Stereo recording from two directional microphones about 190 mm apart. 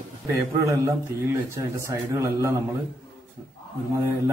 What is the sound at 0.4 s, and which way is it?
A man's voice, 15° right (ahead or behind).